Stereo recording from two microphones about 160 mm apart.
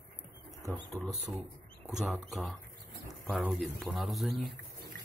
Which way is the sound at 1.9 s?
Centre (ahead or behind).